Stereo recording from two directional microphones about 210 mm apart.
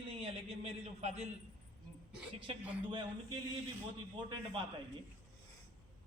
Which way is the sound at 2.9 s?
20° right (ahead or behind).